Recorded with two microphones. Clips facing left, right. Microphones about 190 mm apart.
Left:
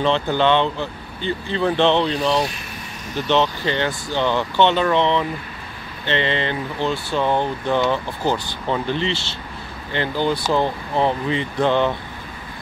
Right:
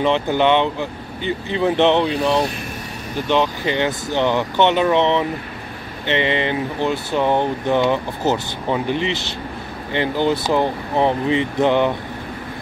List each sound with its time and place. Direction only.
0.0 s speech: 15° right (ahead or behind)
3.3 s speech: 10° right (ahead or behind)